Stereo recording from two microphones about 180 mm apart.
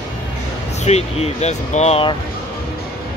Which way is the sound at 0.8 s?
35° left (ahead or behind).